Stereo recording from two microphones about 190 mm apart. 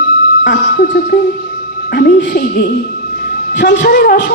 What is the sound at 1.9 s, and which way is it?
Speech, 55° left (ahead or behind).